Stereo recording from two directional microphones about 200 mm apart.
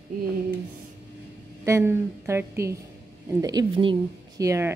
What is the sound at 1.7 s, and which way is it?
Speech, 15° right (ahead or behind).